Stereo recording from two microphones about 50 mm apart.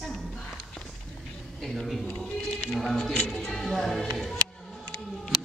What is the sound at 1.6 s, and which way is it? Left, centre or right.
Speech, centre.